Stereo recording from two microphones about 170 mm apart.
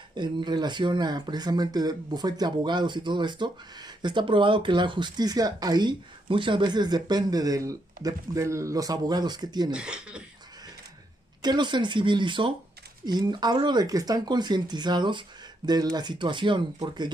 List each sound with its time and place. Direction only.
0.1 s speech: 25° right (ahead or behind)
9.7 s speech: 5° right (ahead or behind)
11.4 s speech: 25° right (ahead or behind)